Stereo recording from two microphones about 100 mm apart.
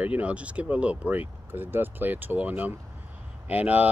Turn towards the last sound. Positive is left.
turn(degrees=-15)  # may be behind; listen again after turning